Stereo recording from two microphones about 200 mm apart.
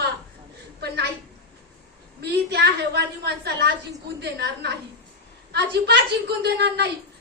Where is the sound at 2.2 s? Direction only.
55° right (ahead or behind).